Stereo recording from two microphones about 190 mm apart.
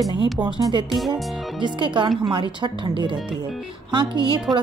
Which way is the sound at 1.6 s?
25° right (ahead or behind).